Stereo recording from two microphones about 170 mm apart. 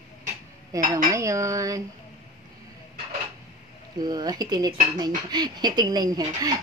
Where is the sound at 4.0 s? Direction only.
25° right (ahead or behind).